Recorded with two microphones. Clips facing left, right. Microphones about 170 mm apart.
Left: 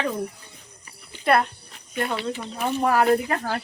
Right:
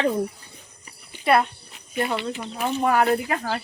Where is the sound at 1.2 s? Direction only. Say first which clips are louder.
Right 1 dB; centre (ahead or behind).